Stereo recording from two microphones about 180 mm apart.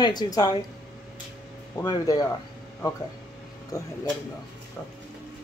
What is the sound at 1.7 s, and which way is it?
Speech, 20° left (ahead or behind).